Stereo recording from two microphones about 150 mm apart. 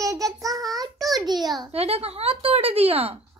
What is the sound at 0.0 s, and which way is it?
Child singing, 20° right (ahead or behind).